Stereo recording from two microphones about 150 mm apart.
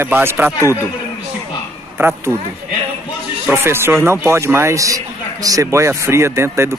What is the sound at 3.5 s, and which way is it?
A man's voice, 15° right (ahead or behind).